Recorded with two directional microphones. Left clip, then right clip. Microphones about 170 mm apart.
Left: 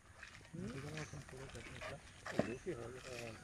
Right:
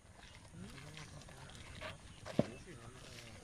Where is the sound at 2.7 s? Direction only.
30° left (ahead or behind).